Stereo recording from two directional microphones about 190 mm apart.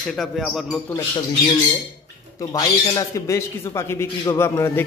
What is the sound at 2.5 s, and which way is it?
Speech, 20° left (ahead or behind).